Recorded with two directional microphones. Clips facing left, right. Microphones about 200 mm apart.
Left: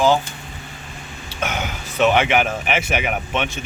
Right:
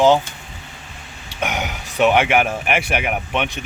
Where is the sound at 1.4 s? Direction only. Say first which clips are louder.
Right 1 dB; 15° right (ahead or behind).